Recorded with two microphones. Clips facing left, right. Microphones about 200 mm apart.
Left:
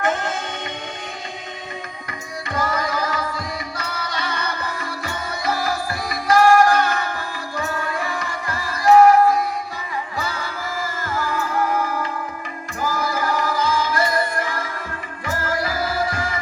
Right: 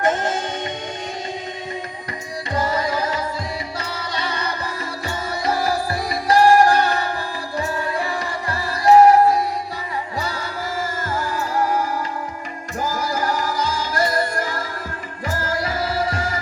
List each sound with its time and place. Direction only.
0.0 s music: 40° right (ahead or behind)
2.5 s music: 25° right (ahead or behind)
13.0 s music: 45° right (ahead or behind); by 16.2 s 25° right (ahead or behind)